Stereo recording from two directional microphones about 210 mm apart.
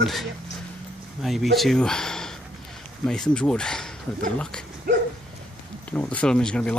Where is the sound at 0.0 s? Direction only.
Centre (ahead or behind).